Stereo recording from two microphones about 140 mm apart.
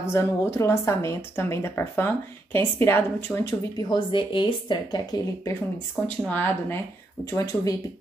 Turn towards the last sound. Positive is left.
turn(degrees=25)  # may be behind; listen again after turning